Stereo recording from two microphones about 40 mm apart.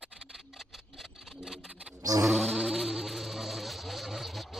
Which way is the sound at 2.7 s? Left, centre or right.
Centre.